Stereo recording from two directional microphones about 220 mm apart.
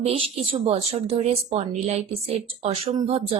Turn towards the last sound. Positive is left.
turn(degrees=-25)  # may be behind; listen again after turning